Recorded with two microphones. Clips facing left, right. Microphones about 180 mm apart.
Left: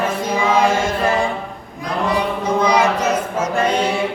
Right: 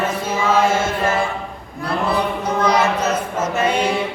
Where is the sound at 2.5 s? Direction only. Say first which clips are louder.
Left 2 dB; 10° left (ahead or behind).